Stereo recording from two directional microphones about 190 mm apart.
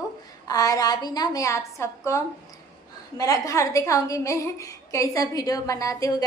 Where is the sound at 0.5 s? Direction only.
20° left (ahead or behind).